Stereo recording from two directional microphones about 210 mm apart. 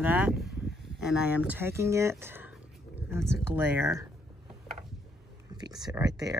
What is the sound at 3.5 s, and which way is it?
Speech, 10° right (ahead or behind).